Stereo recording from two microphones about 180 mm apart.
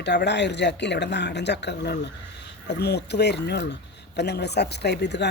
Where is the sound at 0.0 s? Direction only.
75° left (ahead or behind).